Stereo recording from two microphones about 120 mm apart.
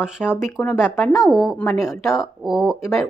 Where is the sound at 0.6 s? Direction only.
25° left (ahead or behind).